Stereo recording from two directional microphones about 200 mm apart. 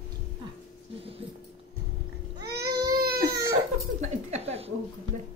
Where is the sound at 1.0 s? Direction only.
30° right (ahead or behind).